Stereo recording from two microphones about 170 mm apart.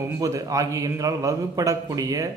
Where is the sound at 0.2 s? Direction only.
20° right (ahead or behind).